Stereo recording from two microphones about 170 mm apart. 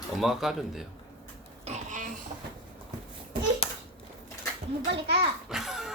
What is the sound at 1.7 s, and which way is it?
Pig, 45° right (ahead or behind).